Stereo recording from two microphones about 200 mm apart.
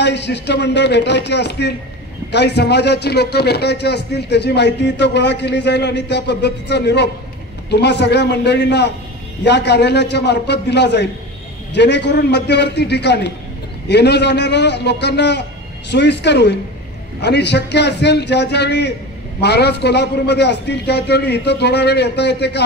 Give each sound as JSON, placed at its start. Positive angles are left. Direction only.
{"t": 0.0, "sound": "a man's voice", "side_deg": 60}